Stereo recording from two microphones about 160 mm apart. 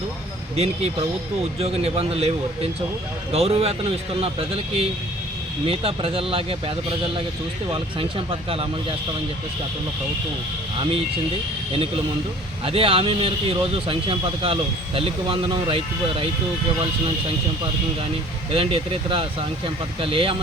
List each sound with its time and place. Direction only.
0.5 s speech: 40° right (ahead or behind)
12.6 s speech: 35° right (ahead or behind)
18.5 s speech: 35° right (ahead or behind)